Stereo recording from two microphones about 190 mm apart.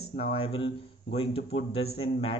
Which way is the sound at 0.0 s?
30° left (ahead or behind).